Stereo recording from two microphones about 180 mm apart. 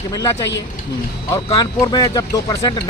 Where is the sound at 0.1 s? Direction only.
20° left (ahead or behind).